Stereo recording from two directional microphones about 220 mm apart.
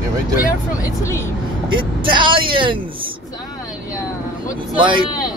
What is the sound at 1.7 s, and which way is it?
Speech, 20° right (ahead or behind).